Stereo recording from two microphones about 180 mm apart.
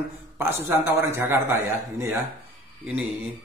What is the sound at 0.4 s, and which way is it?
A man's voice, 10° right (ahead or behind).